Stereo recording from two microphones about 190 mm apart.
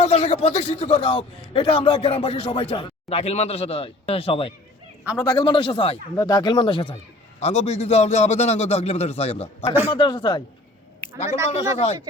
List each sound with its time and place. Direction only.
0.0 s speech: 35° left (ahead or behind)
5.1 s a man's voice: 15° left (ahead or behind)
5.4 s speech: 25° left (ahead or behind)
11.5 s speech: 35° left (ahead or behind)